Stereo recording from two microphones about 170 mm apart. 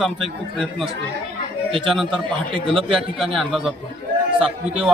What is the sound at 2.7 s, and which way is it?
Speech, 30° right (ahead or behind).